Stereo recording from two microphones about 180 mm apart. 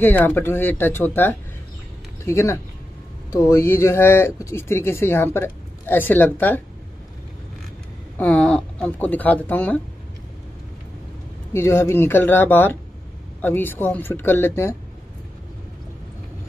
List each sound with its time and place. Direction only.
0.0 s speech: 10° left (ahead or behind)
8.2 s speech: 5° left (ahead or behind)
11.5 s speech: 15° left (ahead or behind)